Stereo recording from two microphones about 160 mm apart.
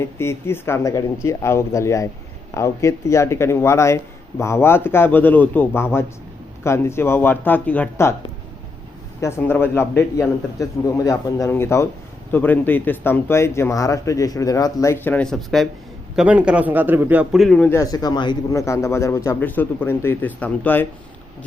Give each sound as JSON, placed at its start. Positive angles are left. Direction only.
{"t": 0.2, "sound": "speech", "side_deg": 15}
{"t": 9.2, "sound": "a man's voice", "side_deg": 15}
{"t": 17.7, "sound": "speech", "side_deg": 20}